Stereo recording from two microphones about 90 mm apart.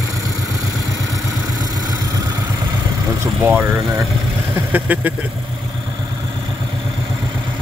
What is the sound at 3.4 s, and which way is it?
Speech, 25° right (ahead or behind).